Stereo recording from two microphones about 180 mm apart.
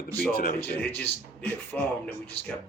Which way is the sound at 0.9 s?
10° left (ahead or behind).